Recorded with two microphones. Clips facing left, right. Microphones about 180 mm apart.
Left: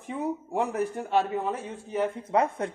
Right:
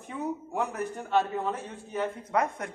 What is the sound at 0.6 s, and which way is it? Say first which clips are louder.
A man's voice: left 5 dB; 10° left (ahead or behind).